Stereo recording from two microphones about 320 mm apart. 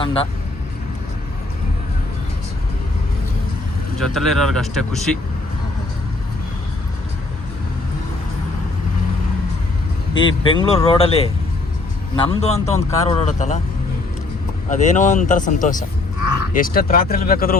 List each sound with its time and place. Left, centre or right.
0.0 s speech: centre
4.0 s speech: centre
10.2 s a man's voice: centre
14.7 s a man's voice: left